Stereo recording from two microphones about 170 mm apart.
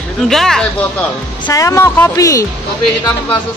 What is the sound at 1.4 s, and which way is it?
Speech, 20° left (ahead or behind).